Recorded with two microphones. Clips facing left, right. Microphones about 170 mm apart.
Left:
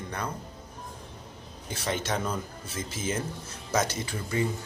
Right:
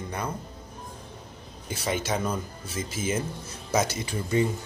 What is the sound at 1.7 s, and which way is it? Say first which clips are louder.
Speech: right 2 dB; 5° right (ahead or behind).